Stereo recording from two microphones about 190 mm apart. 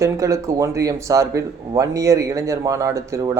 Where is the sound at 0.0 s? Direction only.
15° right (ahead or behind).